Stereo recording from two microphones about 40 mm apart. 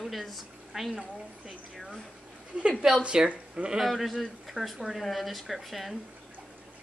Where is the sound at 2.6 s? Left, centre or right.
Right.